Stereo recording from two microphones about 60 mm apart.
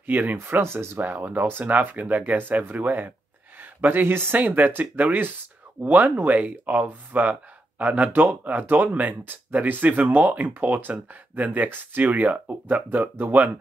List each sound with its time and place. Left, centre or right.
0.0 s speech: right
0.4 s speech: right
1.0 s speech: right